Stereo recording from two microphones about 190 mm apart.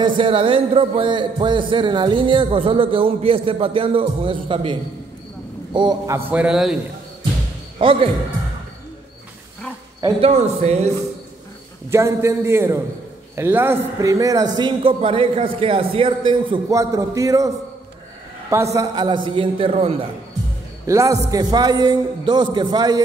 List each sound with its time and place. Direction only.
0.2 s a man's voice: 30° right (ahead or behind)
6.3 s a man's voice: 5° right (ahead or behind)
7.8 s a man's voice: 30° right (ahead or behind)
9.9 s a man's voice: 20° right (ahead or behind)
10.3 s speech: 35° right (ahead or behind)
11.9 s a man's voice: 15° right (ahead or behind)
18.5 s a man's voice: 15° right (ahead or behind); by 20.1 s 30° right (ahead or behind)
20.8 s a man's voice: 15° right (ahead or behind)